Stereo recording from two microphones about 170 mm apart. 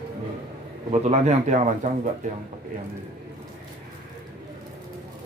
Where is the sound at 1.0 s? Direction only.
40° right (ahead or behind).